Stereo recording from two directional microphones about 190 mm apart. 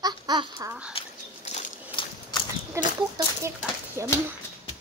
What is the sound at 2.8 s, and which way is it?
Speech, 15° right (ahead or behind).